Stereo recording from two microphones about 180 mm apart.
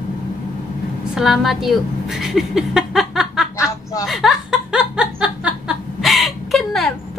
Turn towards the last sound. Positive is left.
turn(degrees=0)  # may be behind; listen again after turning